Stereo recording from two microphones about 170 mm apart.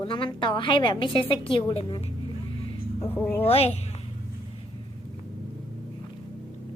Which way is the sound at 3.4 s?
35° left (ahead or behind).